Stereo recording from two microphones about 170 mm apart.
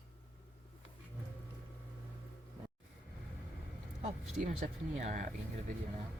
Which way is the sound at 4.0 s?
45° right (ahead or behind).